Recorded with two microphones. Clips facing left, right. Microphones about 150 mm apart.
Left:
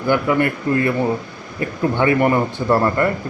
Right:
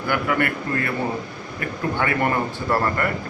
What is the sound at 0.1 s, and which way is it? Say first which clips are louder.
Speech: left 5 dB; 25° left (ahead or behind).